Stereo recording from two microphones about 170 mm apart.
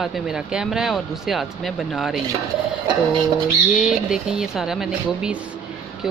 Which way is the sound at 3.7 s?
5° right (ahead or behind).